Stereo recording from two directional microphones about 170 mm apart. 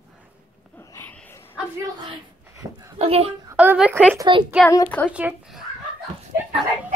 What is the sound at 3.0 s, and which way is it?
Speech, 35° right (ahead or behind).